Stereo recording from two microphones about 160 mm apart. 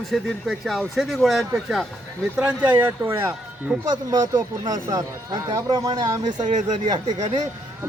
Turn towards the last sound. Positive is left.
turn(degrees=-45)  # may be behind; listen again after turning